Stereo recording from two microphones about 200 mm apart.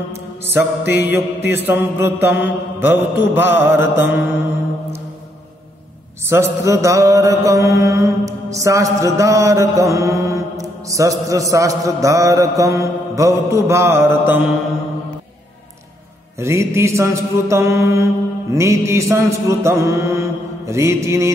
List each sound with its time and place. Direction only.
0.4 s mantra: 10° right (ahead or behind)
6.2 s mantra: 15° right (ahead or behind)
16.3 s mantra: 15° right (ahead or behind)